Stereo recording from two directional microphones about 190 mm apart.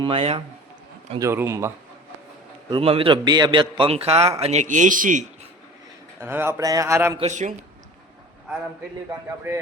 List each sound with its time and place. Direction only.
0.0 s speech: 30° right (ahead or behind)
1.2 s a man's voice: 15° right (ahead or behind)
2.6 s a man's voice: 25° right (ahead or behind); by 5.2 s 45° right (ahead or behind)
6.1 s a man's voice: 10° right (ahead or behind)
7.2 s a man's voice: 40° right (ahead or behind)